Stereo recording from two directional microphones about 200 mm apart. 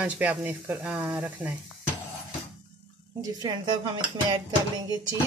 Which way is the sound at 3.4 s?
20° right (ahead or behind).